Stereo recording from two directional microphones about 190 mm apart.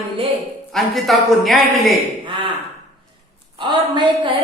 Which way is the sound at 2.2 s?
25° right (ahead or behind).